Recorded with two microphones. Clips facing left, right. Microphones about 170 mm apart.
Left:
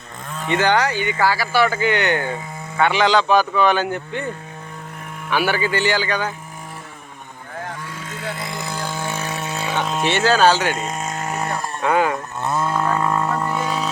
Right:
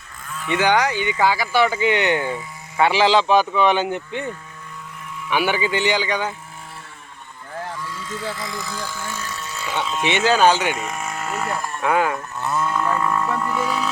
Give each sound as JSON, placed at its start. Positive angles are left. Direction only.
{"t": 0.3, "sound": "cattle", "side_deg": 35}
{"t": 0.6, "sound": "speech", "side_deg": -10}
{"t": 5.3, "sound": "a man's voice", "side_deg": -15}
{"t": 7.9, "sound": "vehicle", "side_deg": 55}
{"t": 9.8, "sound": "speech", "side_deg": 50}
{"t": 10.1, "sound": "a man's voice", "side_deg": -15}
{"t": 10.8, "sound": "vehicle", "side_deg": 20}
{"t": 11.8, "sound": "speech", "side_deg": 0}
{"t": 12.5, "sound": "a sound", "side_deg": 30}